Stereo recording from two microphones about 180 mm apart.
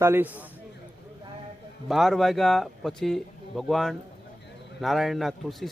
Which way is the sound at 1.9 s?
Centre (ahead or behind).